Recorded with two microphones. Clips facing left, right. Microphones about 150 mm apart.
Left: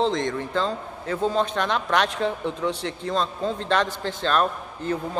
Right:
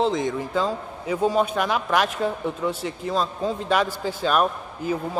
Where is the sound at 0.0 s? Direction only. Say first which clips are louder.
Right 1 dB; 5° right (ahead or behind).